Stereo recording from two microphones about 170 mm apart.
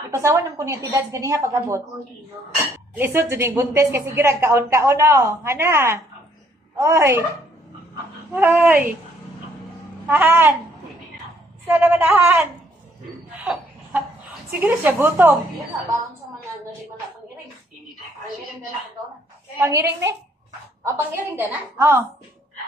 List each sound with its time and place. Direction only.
0.1 s a woman's voice: 15° right (ahead or behind)
3.0 s a woman's voice: 15° right (ahead or behind)
8.4 s a woman's voice: 10° right (ahead or behind)
10.0 s a woman's voice: 10° right (ahead or behind)
11.6 s a woman's voice: 10° right (ahead or behind)
13.4 s a sound: 5° right (ahead or behind)
14.6 s a woman's voice: 10° right (ahead or behind)
19.6 s a woman's voice: 15° right (ahead or behind)